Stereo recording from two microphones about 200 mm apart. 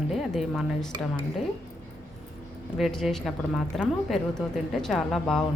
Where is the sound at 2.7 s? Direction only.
Centre (ahead or behind).